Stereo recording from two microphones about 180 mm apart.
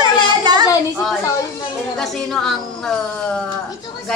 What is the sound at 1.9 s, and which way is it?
Speech, 5° left (ahead or behind).